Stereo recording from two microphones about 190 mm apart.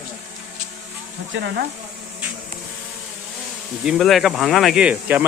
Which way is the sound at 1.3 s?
70° right (ahead or behind).